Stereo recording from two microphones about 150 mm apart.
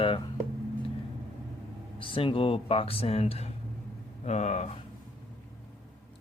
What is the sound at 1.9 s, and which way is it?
Speech, 35° left (ahead or behind).